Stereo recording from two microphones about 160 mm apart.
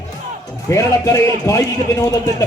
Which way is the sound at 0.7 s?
20° left (ahead or behind).